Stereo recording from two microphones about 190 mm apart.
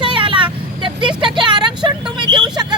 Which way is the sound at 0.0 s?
25° right (ahead or behind).